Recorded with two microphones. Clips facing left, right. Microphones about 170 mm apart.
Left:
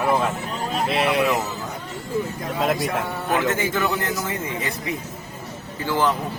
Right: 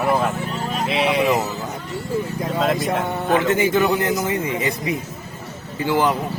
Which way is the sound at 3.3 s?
15° right (ahead or behind).